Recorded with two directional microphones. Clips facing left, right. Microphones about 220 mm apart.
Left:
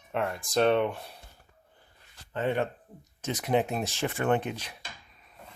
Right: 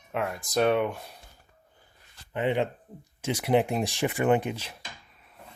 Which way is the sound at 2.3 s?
15° right (ahead or behind).